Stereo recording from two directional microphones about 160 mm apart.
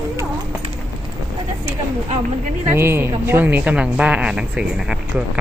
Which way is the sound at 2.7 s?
15° right (ahead or behind).